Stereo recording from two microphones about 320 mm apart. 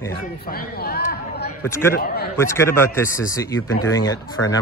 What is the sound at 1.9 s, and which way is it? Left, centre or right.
Speech, left.